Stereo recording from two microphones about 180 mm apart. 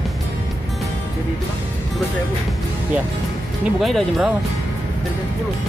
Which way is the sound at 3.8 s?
Centre (ahead or behind).